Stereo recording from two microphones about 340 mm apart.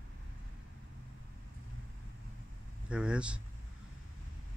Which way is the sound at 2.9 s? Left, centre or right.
Centre.